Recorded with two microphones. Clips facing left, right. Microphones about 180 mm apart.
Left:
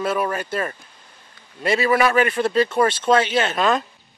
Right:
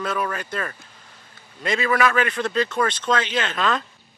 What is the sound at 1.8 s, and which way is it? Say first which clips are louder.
Speech: left 3 dB; 30° left (ahead or behind).